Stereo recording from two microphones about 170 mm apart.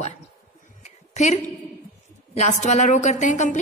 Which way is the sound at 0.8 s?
45° left (ahead or behind).